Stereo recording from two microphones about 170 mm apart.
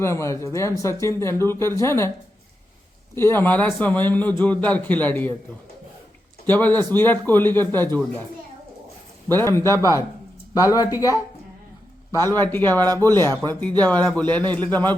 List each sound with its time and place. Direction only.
0.0 s speech: 15° left (ahead or behind)
3.2 s speech: 15° left (ahead or behind)
6.4 s speech: 10° left (ahead or behind)
9.3 s speech: 15° left (ahead or behind)